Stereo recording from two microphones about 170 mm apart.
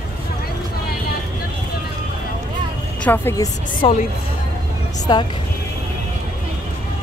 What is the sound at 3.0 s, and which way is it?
Speech, 10° left (ahead or behind).